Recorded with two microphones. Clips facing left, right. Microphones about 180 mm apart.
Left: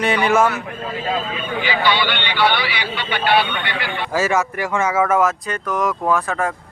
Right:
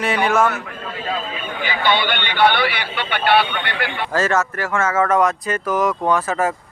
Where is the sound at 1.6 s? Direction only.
50° right (ahead or behind).